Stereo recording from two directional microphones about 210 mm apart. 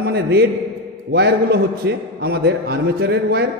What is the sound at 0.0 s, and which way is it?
A man's voice, 50° right (ahead or behind).